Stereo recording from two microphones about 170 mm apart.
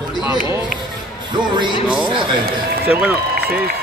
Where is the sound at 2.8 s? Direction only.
10° right (ahead or behind).